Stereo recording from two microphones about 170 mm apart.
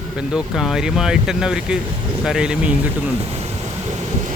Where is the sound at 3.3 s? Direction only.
40° right (ahead or behind).